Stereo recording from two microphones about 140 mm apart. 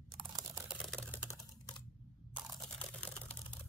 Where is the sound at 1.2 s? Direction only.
20° left (ahead or behind).